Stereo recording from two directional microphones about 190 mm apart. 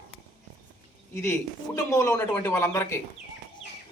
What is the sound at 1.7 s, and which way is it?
A man's voice, 15° left (ahead or behind).